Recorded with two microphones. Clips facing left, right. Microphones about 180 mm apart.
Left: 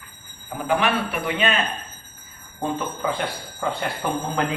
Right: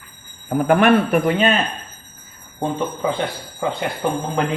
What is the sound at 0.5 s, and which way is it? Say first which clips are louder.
Speech: right 8 dB; 55° right (ahead or behind).